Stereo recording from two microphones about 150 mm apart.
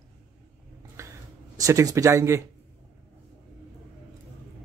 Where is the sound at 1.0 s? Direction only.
20° right (ahead or behind).